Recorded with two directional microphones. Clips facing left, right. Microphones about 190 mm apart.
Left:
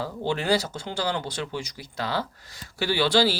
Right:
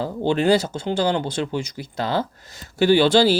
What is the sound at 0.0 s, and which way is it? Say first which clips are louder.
Speech: right 8 dB; 25° right (ahead or behind).